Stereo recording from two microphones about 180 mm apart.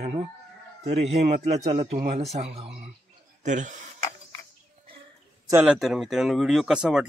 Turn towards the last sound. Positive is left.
turn(degrees=-5)  # may be behind; listen again after turning